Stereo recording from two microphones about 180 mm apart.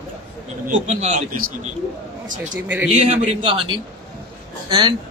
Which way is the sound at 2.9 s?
40° right (ahead or behind).